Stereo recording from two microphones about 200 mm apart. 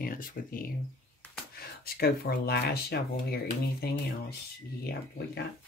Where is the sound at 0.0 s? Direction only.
45° left (ahead or behind).